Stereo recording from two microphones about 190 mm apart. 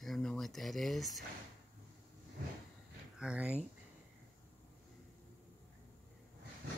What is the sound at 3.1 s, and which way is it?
Speech, 5° right (ahead or behind).